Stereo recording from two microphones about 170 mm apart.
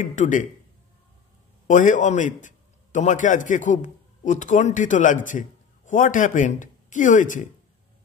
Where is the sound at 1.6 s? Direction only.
50° left (ahead or behind).